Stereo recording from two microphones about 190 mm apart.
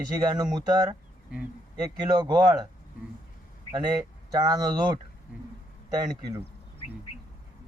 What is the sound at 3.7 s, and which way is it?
Speech, 20° right (ahead or behind).